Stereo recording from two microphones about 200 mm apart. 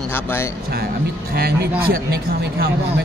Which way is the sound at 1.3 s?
50° right (ahead or behind).